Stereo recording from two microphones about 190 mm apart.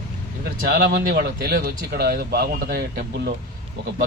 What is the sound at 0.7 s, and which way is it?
A man's voice, 55° right (ahead or behind).